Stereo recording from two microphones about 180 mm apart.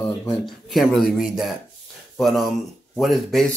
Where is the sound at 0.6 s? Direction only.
Centre (ahead or behind).